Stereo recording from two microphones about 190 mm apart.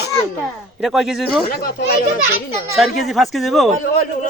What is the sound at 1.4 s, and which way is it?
Speech, 50° left (ahead or behind).